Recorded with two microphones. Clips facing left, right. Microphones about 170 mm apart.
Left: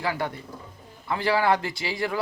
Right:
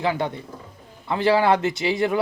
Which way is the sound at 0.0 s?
20° right (ahead or behind).